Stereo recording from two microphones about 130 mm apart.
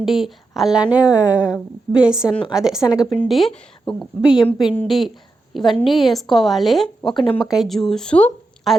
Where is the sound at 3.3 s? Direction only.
Centre (ahead or behind).